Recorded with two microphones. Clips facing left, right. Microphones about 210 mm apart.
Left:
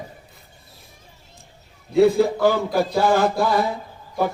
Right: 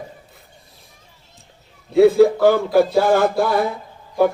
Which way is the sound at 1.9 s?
55° right (ahead or behind).